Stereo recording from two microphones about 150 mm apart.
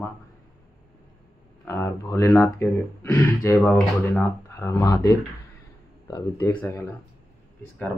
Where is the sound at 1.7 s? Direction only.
15° left (ahead or behind).